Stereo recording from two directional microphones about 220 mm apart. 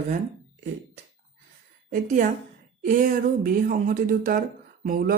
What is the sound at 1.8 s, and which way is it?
A woman's voice, 40° right (ahead or behind).